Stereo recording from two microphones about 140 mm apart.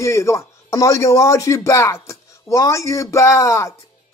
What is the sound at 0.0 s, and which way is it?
A man's voice, 20° left (ahead or behind).